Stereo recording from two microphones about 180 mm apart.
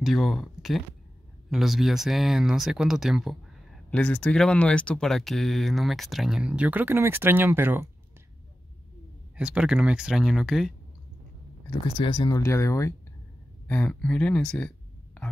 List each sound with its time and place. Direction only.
0.0 s speech: centre (ahead or behind)
9.4 s speech: 5° right (ahead or behind)
11.7 s speech: 25° left (ahead or behind); by 14.7 s 5° left (ahead or behind)